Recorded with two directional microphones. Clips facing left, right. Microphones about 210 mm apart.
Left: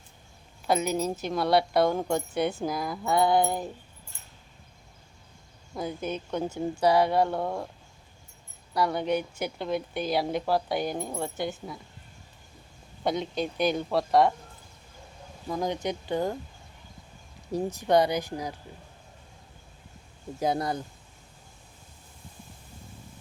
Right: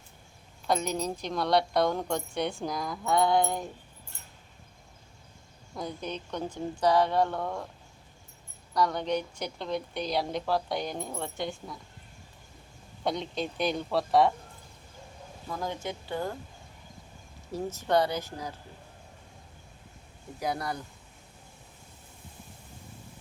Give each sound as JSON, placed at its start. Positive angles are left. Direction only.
{"t": 0.7, "sound": "speech", "side_deg": 5}
{"t": 5.7, "sound": "a woman's voice", "side_deg": 5}
{"t": 8.7, "sound": "a woman's voice", "side_deg": 10}
{"t": 13.1, "sound": "speech", "side_deg": 0}
{"t": 15.4, "sound": "speech", "side_deg": 15}
{"t": 17.5, "sound": "a woman's voice", "side_deg": 15}
{"t": 20.4, "sound": "speech", "side_deg": 25}